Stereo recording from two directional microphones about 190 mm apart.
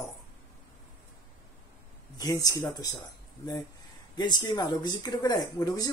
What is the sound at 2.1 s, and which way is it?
Speech, 20° left (ahead or behind).